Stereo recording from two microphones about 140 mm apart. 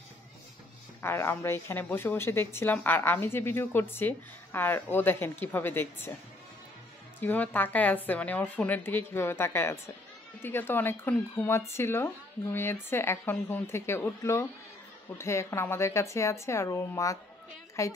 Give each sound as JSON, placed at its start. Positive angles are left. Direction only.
{"t": 1.0, "sound": "a woman's voice", "side_deg": 15}
{"t": 7.2, "sound": "a woman's voice", "side_deg": 15}